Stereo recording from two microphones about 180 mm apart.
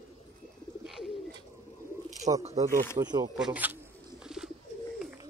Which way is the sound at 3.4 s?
10° right (ahead or behind).